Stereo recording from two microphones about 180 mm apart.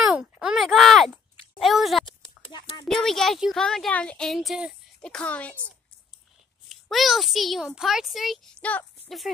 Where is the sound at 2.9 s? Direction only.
Centre (ahead or behind).